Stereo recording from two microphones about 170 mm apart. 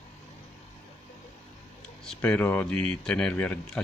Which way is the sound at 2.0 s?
5° left (ahead or behind).